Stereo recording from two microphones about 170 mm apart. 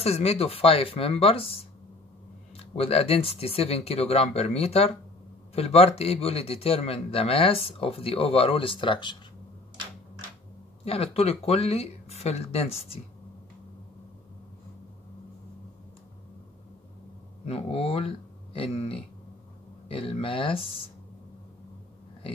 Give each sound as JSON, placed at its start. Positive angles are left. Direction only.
{"t": 0.0, "sound": "a man's voice", "side_deg": 35}
{"t": 10.9, "sound": "a man's voice", "side_deg": 35}
{"t": 17.5, "sound": "a man's voice", "side_deg": 35}